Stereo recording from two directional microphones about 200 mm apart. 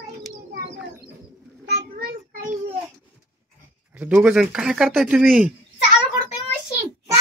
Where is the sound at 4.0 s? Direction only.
5° right (ahead or behind).